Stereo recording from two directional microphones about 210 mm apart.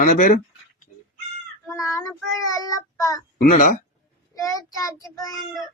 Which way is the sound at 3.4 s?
40° left (ahead or behind).